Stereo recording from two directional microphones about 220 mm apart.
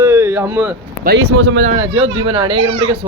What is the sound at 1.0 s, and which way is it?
Speech, 50° right (ahead or behind).